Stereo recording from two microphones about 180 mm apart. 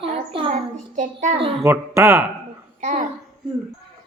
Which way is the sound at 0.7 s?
45° right (ahead or behind).